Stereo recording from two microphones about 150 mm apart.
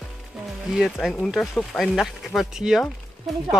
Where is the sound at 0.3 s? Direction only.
5° right (ahead or behind).